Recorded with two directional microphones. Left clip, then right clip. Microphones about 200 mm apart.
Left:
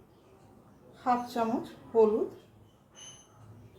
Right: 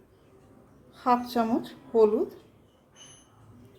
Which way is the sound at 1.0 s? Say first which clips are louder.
Right 4 dB; 45° right (ahead or behind).